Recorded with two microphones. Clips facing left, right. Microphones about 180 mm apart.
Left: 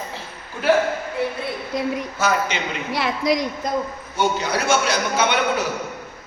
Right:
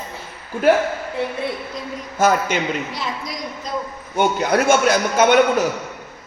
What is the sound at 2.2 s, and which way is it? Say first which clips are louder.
Speech: right 6 dB; 50° right (ahead or behind).